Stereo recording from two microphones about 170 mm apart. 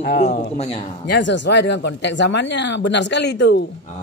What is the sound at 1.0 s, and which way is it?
Speech, 90° left.